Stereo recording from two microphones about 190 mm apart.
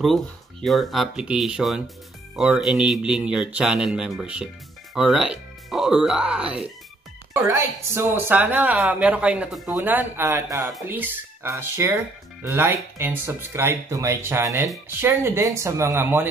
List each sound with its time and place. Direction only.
0.0 s a man's voice: centre (ahead or behind)